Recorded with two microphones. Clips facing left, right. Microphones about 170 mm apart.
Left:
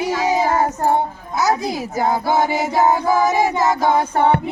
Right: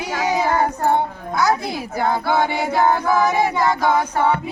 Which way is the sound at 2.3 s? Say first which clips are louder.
Left 1 dB; 40° left (ahead or behind).